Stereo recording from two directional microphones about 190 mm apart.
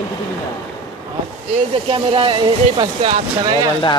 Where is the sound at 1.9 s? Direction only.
25° right (ahead or behind).